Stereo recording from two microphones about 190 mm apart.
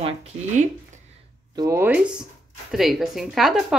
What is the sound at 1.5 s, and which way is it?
A woman's voice, 15° right (ahead or behind).